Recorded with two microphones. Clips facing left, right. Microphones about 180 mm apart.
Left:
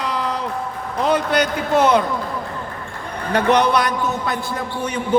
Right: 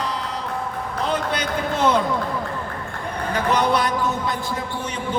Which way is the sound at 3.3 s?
70° left (ahead or behind).